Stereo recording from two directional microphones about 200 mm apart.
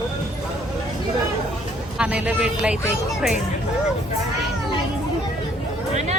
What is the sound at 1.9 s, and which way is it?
Speech, 5° right (ahead or behind).